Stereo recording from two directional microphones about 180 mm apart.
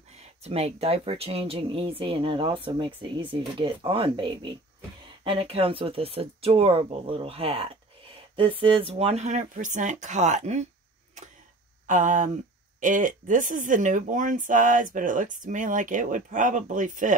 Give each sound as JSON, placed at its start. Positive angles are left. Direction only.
{"t": 0.1, "sound": "speech", "side_deg": -35}
{"t": 11.9, "sound": "speech", "side_deg": -45}